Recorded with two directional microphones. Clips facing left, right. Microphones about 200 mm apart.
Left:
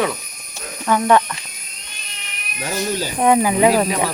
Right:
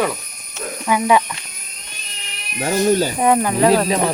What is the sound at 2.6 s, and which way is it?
Speech, 45° right (ahead or behind).